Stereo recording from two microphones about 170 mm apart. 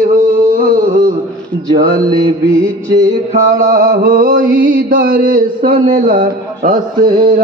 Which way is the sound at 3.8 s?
75° right (ahead or behind).